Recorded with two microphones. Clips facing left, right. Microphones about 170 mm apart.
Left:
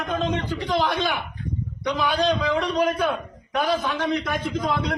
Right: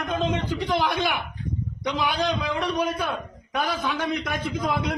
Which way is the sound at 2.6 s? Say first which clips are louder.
Left 3 dB; centre (ahead or behind).